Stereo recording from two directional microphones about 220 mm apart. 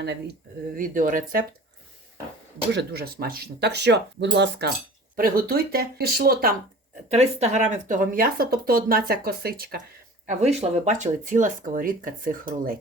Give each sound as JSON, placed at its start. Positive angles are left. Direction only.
{"t": 0.8, "sound": "speech", "side_deg": -40}
{"t": 2.7, "sound": "speech", "side_deg": -45}
{"t": 5.1, "sound": "speech", "side_deg": -40}
{"t": 7.1, "sound": "speech", "side_deg": -30}
{"t": 10.2, "sound": "speech", "side_deg": -30}